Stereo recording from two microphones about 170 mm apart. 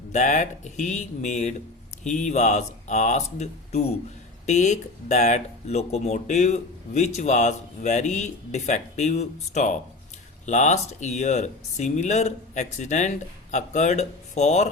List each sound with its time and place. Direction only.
0.1 s speech: 45° left (ahead or behind)